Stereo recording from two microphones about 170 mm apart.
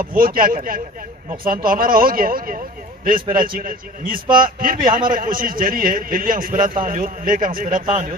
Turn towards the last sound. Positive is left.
turn(degrees=-55)  # may be behind; listen again after turning